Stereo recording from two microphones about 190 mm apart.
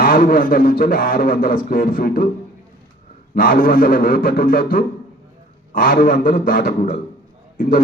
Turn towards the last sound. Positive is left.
turn(degrees=45)  # may be behind; listen again after turning